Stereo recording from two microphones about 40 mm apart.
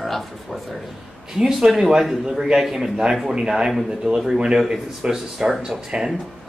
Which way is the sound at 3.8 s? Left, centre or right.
Right.